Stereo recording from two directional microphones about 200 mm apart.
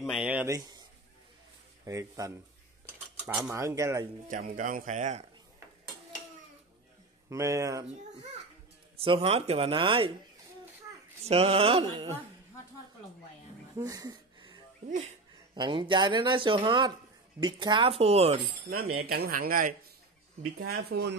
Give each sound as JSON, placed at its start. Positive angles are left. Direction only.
{"t": 0.0, "sound": "speech", "side_deg": -5}
{"t": 0.6, "sound": "cat", "side_deg": -20}
{"t": 1.9, "sound": "speech", "side_deg": -15}
{"t": 3.2, "sound": "speech", "side_deg": -5}
{"t": 4.3, "sound": "speech", "side_deg": -40}
{"t": 7.2, "sound": "speech", "side_deg": -15}
{"t": 8.9, "sound": "speech", "side_deg": -30}
{"t": 11.2, "sound": "speech", "side_deg": -30}
{"t": 13.7, "sound": "wheeze", "side_deg": -20}
{"t": 15.5, "sound": "speech", "side_deg": -25}
{"t": 18.8, "sound": "speech", "side_deg": -90}
{"t": 19.1, "sound": "speech", "side_deg": -50}
{"t": 20.7, "sound": "speech", "side_deg": -55}